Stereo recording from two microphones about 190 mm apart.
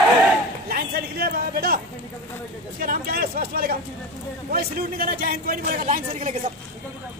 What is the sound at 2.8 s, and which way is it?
A man's voice, 50° right (ahead or behind).